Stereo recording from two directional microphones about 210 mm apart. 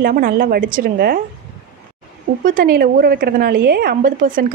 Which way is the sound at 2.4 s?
40° right (ahead or behind).